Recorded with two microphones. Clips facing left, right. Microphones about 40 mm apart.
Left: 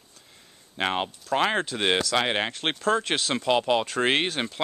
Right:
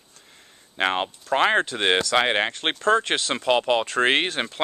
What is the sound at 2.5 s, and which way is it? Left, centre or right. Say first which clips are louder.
Speech: right 4 dB; centre.